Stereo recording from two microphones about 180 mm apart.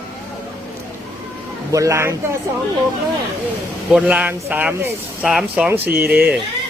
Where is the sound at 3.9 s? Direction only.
5° right (ahead or behind).